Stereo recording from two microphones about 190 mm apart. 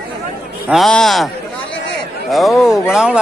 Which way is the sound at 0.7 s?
Centre (ahead or behind).